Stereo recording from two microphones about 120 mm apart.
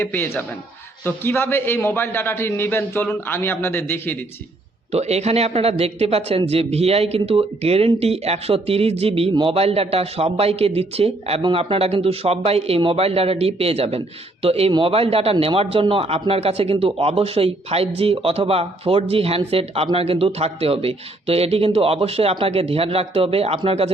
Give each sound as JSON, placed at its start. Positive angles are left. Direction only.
{"t": 0.0, "sound": "a man's voice", "side_deg": 15}
{"t": 4.9, "sound": "a man's voice", "side_deg": -65}